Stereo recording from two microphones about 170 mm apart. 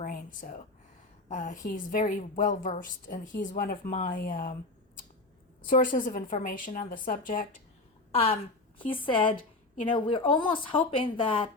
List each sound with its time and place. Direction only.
0.0 s a sound: 50° left (ahead or behind)
1.3 s a woman's voice: 50° left (ahead or behind)
5.6 s a woman's voice: 50° left (ahead or behind)
8.1 s a woman's voice: 35° left (ahead or behind)